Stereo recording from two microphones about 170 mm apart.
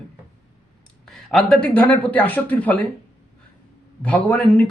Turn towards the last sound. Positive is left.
turn(degrees=5)  # may be behind; listen again after turning